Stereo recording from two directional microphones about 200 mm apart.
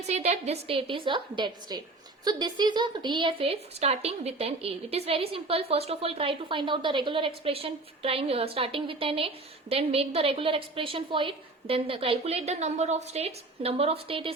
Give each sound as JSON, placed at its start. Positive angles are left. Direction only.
{"t": 0.1, "sound": "speech", "side_deg": -35}